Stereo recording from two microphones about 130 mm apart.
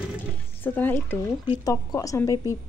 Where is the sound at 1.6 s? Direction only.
25° left (ahead or behind).